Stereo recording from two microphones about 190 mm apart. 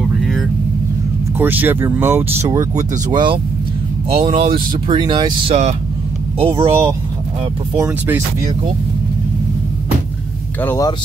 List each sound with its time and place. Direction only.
0.2 s vehicle: centre (ahead or behind)
1.4 s speech: 10° right (ahead or behind); by 6.9 s 30° right (ahead or behind)
7.7 s speech: 15° right (ahead or behind)
10.6 s speech: 10° left (ahead or behind)